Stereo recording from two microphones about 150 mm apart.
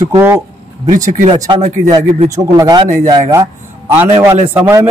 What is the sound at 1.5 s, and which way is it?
Speech, 55° right (ahead or behind).